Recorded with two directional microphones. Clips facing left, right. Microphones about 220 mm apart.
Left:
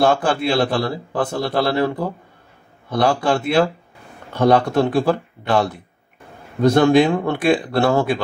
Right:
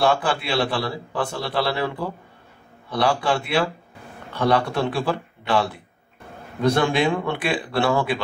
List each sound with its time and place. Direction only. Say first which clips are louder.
0.0 s a man's voice: left 4 dB; 45° left (ahead or behind)